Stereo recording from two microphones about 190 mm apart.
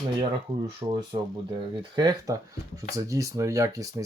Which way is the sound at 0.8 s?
20° right (ahead or behind).